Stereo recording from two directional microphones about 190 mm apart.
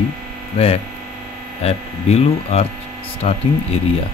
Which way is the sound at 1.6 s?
35° left (ahead or behind).